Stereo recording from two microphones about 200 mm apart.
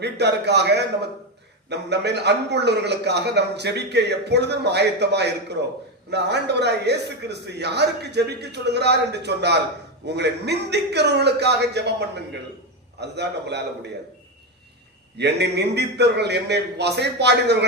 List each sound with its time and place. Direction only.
0.0 s a man's voice: 55° right (ahead or behind)
15.2 s a man's voice: 55° right (ahead or behind)